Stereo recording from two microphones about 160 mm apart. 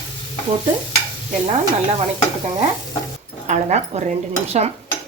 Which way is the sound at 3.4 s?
45° right (ahead or behind).